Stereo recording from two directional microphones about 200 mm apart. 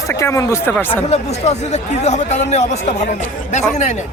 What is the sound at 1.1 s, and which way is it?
Speech, 35° left (ahead or behind).